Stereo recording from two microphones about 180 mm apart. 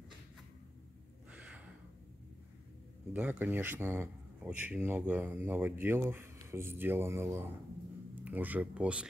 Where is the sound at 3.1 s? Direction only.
10° right (ahead or behind).